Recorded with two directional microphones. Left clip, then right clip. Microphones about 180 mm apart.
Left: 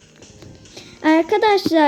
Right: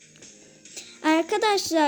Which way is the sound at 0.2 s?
20° right (ahead or behind).